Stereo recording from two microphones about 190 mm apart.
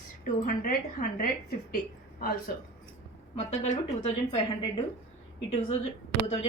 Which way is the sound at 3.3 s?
35° left (ahead or behind).